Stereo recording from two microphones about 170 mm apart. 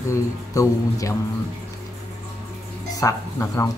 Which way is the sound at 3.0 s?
15° left (ahead or behind).